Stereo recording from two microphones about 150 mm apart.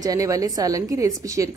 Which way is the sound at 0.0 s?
25° right (ahead or behind).